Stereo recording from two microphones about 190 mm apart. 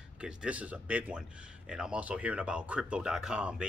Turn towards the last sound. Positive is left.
turn(degrees=-5)  # may be behind; listen again after turning